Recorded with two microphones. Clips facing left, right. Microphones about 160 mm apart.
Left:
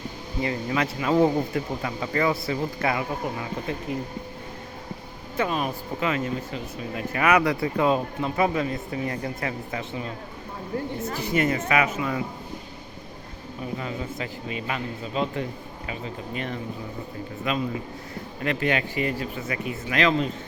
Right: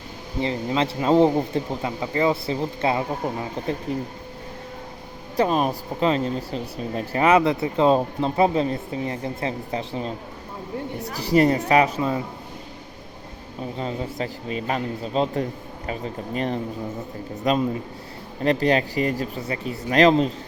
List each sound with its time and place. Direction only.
0.4 s speech: 25° right (ahead or behind)
5.4 s a man's voice: 35° right (ahead or behind)
13.7 s a man's voice: 35° right (ahead or behind)